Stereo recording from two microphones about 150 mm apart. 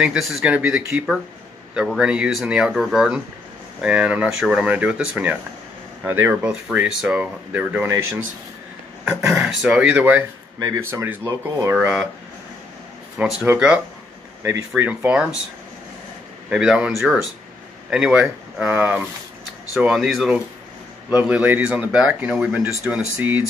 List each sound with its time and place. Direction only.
0.0 s speech: 5° right (ahead or behind)
9.0 s speech: 5° right (ahead or behind)
10.6 s speech: 20° right (ahead or behind)
11.8 s speech: 5° right (ahead or behind)
13.2 s speech: 5° right (ahead or behind)
14.8 s speech: 15° right (ahead or behind)
16.4 s speech: 5° right (ahead or behind)